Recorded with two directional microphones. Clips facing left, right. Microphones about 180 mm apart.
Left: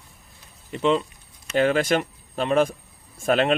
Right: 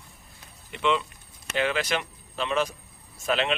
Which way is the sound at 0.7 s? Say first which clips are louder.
Left 4 dB; 40° left (ahead or behind).